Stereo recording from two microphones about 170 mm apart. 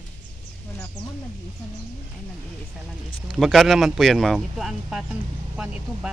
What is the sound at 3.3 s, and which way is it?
Speech, centre (ahead or behind).